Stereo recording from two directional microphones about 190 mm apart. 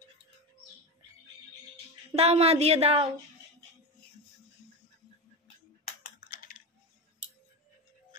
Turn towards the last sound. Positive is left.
turn(degrees=45)  # may be behind; listen again after turning